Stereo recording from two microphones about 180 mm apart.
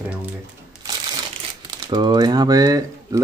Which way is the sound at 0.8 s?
25° right (ahead or behind).